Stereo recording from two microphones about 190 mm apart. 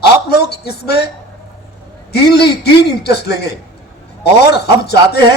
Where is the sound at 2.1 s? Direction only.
60° left (ahead or behind).